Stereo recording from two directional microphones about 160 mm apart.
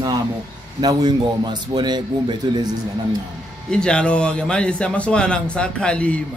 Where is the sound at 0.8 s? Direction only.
25° right (ahead or behind).